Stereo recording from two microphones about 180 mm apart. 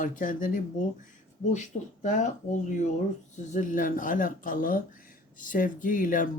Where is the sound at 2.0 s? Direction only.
45° left (ahead or behind).